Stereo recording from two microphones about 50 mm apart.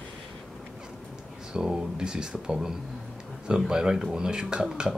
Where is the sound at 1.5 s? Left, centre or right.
Centre.